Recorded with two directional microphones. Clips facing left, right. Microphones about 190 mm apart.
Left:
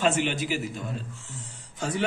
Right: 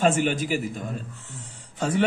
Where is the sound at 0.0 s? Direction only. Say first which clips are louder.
Right 3 dB; 45° right (ahead or behind).